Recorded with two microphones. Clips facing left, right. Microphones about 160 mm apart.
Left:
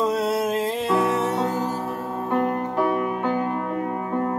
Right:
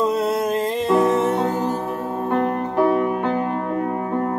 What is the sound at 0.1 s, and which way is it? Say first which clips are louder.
Music: right 2 dB; 5° left (ahead or behind).